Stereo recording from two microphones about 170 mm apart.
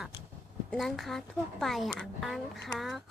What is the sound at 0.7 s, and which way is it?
A woman's voice, centre (ahead or behind).